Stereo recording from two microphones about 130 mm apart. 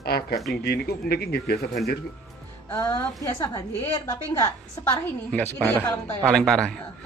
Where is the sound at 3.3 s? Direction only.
30° left (ahead or behind).